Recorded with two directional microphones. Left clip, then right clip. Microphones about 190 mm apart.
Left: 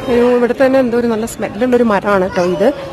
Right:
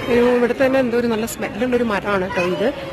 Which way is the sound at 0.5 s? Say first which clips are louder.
Left 5 dB; 15° left (ahead or behind).